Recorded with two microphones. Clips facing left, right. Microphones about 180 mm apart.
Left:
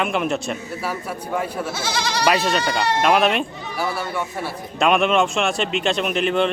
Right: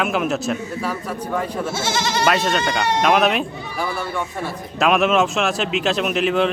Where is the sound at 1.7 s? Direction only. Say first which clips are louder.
Right 4 dB; 25° right (ahead or behind).